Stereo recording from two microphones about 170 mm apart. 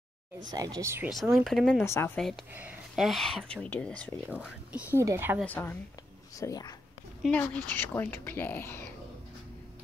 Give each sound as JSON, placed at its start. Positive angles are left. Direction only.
{"t": 0.5, "sound": "speech", "side_deg": -20}
{"t": 1.1, "sound": "speech", "side_deg": 0}
{"t": 1.8, "sound": "speech", "side_deg": 15}
{"t": 2.1, "sound": "speech", "side_deg": 0}
{"t": 4.3, "sound": "speech", "side_deg": -10}
{"t": 5.4, "sound": "speech", "side_deg": 10}
{"t": 7.2, "sound": "speech", "side_deg": 10}